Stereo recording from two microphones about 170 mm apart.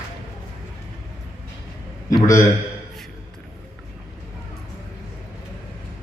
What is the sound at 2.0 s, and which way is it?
Speech, 20° left (ahead or behind).